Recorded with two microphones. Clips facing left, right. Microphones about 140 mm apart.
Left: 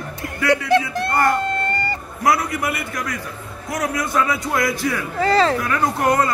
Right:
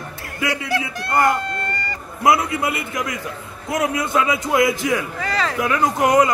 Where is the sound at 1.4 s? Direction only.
30° left (ahead or behind).